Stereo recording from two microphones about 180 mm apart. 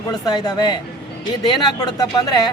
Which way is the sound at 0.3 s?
25° left (ahead or behind).